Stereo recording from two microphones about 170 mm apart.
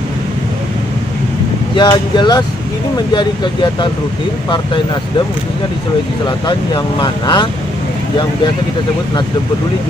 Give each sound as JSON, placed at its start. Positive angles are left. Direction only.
{"t": 1.8, "sound": "speech", "side_deg": 25}
{"t": 6.2, "sound": "speech", "side_deg": 25}